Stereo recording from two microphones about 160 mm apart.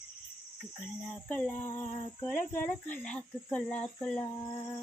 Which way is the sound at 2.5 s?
10° left (ahead or behind).